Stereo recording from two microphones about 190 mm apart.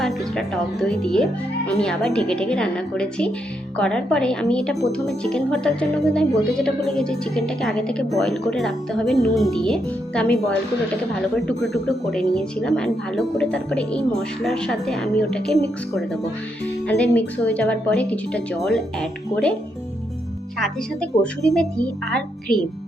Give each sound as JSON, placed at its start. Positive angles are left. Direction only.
{"t": 0.0, "sound": "a woman's voice", "side_deg": 0}
{"t": 16.8, "sound": "speech", "side_deg": 5}
{"t": 20.6, "sound": "a woman's voice", "side_deg": 0}